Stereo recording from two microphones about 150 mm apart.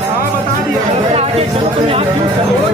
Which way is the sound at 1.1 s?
45° right (ahead or behind).